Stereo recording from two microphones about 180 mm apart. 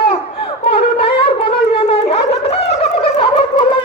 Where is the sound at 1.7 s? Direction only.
30° left (ahead or behind).